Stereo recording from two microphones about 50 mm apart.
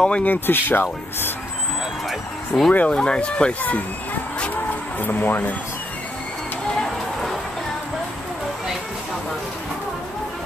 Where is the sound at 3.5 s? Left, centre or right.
Left.